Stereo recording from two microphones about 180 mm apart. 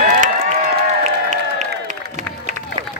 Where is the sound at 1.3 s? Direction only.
45° right (ahead or behind).